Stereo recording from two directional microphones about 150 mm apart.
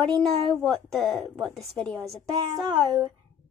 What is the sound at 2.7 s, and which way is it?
Speech, 30° right (ahead or behind).